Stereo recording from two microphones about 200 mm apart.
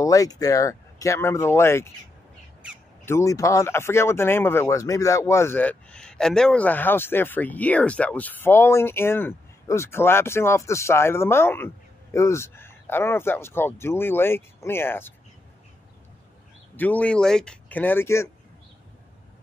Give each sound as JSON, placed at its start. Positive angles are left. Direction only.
{"t": 0.0, "sound": "speech", "side_deg": 15}
{"t": 3.1, "sound": "speech", "side_deg": 15}
{"t": 16.7, "sound": "speech", "side_deg": 10}